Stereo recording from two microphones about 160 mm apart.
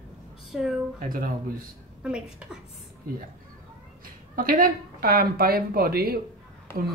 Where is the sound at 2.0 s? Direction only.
5° right (ahead or behind).